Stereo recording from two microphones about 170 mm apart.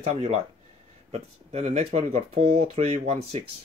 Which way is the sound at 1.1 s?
40° right (ahead or behind).